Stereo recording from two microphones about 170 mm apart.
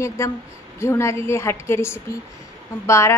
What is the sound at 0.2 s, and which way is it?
A woman's voice, 15° left (ahead or behind).